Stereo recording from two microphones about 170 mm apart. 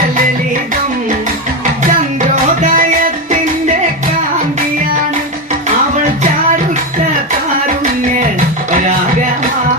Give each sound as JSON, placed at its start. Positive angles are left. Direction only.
{"t": 2.3, "sound": "music", "side_deg": -50}